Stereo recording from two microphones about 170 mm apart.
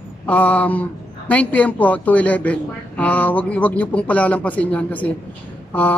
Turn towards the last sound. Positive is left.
turn(degrees=10)  # may be behind; listen again after turning